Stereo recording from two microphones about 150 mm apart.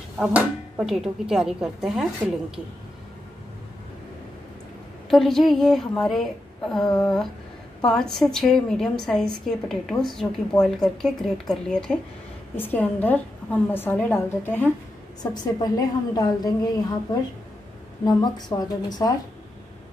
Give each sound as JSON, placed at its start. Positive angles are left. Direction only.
{"t": 0.2, "sound": "a woman's voice", "side_deg": -5}
{"t": 5.1, "sound": "a woman's voice", "side_deg": 0}
{"t": 15.3, "sound": "a woman's voice", "side_deg": 25}